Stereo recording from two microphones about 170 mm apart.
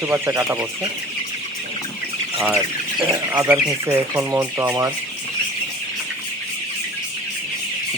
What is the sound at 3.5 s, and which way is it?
Speech, 10° right (ahead or behind).